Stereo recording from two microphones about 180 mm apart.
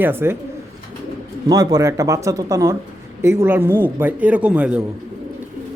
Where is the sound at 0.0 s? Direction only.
10° right (ahead or behind).